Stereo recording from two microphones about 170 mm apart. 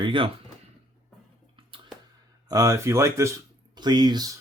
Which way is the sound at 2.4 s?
20° right (ahead or behind).